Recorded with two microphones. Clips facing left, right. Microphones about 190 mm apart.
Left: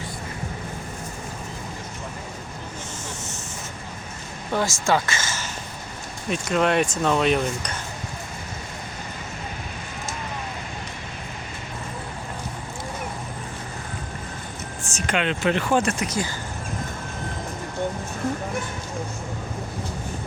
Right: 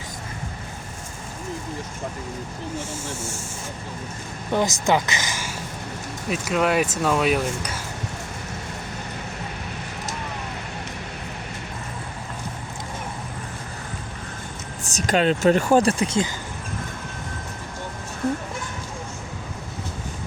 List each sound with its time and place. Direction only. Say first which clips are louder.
4.5 s speech: right 2 dB; 20° right (ahead or behind)
6.2 s speech: even; 5° right (ahead or behind)
14.8 s speech: right 5 dB; 35° right (ahead or behind)